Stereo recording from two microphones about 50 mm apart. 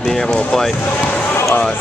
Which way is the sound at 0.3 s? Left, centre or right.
Centre.